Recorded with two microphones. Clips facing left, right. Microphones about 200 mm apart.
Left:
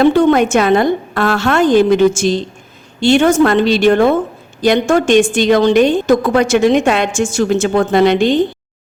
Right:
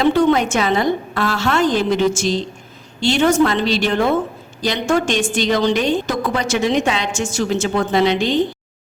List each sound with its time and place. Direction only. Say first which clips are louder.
0.0 s a woman's voice: left 5 dB; 55° left (ahead or behind)